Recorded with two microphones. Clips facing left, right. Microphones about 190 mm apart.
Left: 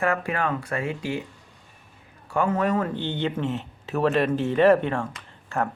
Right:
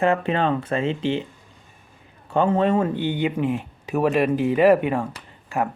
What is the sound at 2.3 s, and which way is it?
Speech, 25° right (ahead or behind).